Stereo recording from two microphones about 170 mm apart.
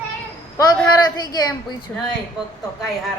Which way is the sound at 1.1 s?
25° left (ahead or behind).